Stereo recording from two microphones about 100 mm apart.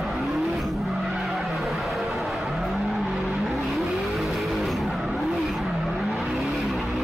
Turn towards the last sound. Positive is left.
turn(degrees=0)  # may be behind; listen again after turning